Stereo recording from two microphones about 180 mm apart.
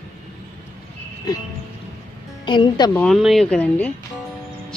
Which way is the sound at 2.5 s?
25° left (ahead or behind).